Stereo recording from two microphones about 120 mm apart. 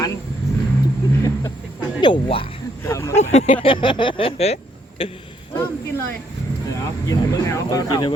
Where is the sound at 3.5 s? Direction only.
45° left (ahead or behind).